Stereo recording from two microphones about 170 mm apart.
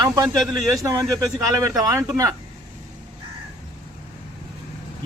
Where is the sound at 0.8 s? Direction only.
20° right (ahead or behind).